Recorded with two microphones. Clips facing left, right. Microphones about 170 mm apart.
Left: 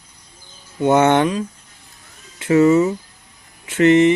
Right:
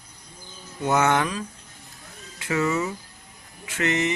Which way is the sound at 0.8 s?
30° left (ahead or behind).